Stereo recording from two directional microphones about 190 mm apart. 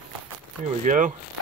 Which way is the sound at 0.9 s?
40° right (ahead or behind).